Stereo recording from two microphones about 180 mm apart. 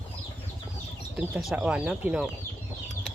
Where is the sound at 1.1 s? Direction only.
5° right (ahead or behind).